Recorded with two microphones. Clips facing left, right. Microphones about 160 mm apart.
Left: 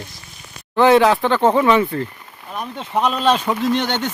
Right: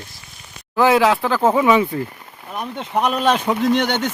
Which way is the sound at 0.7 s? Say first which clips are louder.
Left 2 dB; 5° right (ahead or behind).